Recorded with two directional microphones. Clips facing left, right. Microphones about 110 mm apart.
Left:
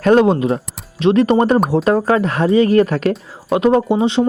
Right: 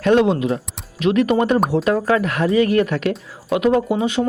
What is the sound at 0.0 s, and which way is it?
Speech, 40° left (ahead or behind).